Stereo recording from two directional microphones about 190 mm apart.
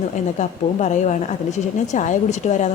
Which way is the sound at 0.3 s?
40° left (ahead or behind).